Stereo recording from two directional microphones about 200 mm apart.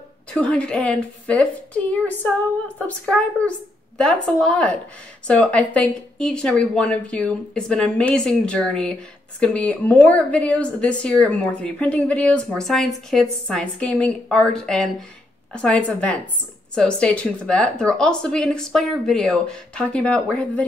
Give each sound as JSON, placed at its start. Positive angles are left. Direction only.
{"t": 0.3, "sound": "speech", "side_deg": 5}